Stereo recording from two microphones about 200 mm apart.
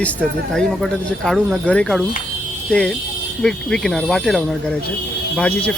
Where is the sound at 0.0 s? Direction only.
5° left (ahead or behind).